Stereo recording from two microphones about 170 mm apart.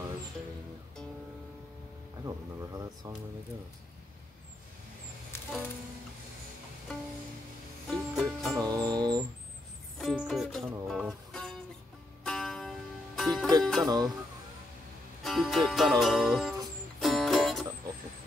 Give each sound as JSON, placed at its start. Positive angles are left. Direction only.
{"t": 2.2, "sound": "speech", "side_deg": -20}
{"t": 7.9, "sound": "music", "side_deg": 0}
{"t": 8.5, "sound": "music", "side_deg": -20}
{"t": 9.9, "sound": "music", "side_deg": 0}
{"t": 13.8, "sound": "music", "side_deg": -20}
{"t": 15.2, "sound": "speech", "side_deg": 0}
{"t": 17.0, "sound": "music", "side_deg": 0}